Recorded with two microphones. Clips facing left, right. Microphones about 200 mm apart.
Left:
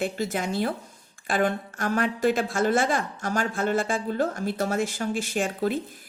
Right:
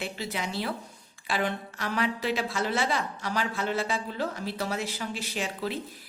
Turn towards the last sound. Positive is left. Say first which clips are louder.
# left 6 dB
turn(degrees=50)  # may be behind; listen again after turning